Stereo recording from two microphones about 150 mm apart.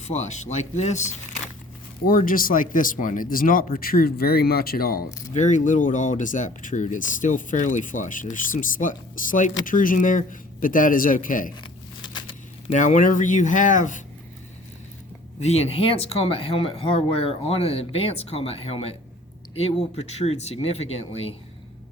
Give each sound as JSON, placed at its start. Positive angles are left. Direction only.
{"t": 0.0, "sound": "speech", "side_deg": 50}
{"t": 2.0, "sound": "speech", "side_deg": 65}
{"t": 5.3, "sound": "speech", "side_deg": 55}
{"t": 12.7, "sound": "speech", "side_deg": 55}
{"t": 15.4, "sound": "speech", "side_deg": 45}